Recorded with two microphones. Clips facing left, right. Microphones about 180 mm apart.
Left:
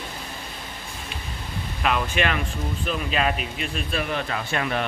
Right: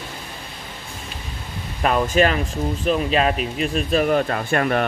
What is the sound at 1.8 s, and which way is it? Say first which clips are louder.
Speech: right 7 dB; 40° right (ahead or behind).